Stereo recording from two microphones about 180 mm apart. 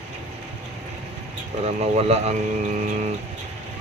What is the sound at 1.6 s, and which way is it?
Speech, 40° right (ahead or behind).